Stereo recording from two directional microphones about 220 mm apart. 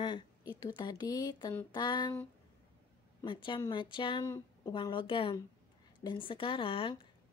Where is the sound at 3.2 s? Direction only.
20° left (ahead or behind).